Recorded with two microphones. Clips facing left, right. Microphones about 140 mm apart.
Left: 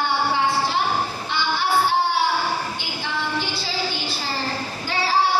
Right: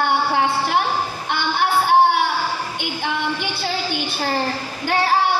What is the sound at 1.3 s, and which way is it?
Music, 55° right (ahead or behind).